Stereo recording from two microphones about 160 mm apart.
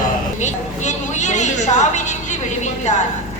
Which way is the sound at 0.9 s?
50° left (ahead or behind).